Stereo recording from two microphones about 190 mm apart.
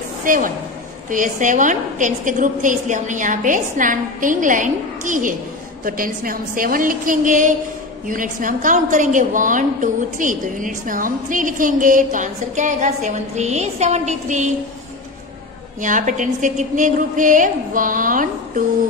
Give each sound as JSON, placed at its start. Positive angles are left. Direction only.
{"t": 0.2, "sound": "a woman's voice", "side_deg": -45}
{"t": 15.8, "sound": "a woman's voice", "side_deg": -40}